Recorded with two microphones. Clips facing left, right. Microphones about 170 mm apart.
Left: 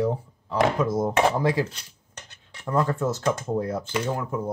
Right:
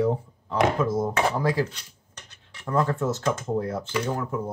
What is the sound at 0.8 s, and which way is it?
Speech, 15° left (ahead or behind).